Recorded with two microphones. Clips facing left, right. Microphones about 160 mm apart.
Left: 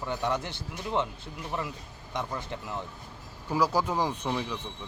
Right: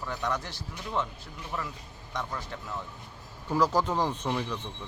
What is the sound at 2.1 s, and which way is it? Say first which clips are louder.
Speech: left 2 dB; 20° left (ahead or behind).